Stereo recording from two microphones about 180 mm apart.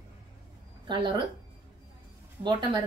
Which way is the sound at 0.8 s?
25° right (ahead or behind).